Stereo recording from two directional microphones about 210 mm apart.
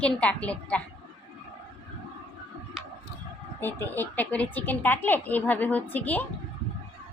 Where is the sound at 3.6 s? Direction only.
10° left (ahead or behind).